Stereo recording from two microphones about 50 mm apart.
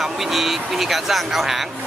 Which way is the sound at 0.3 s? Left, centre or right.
Centre.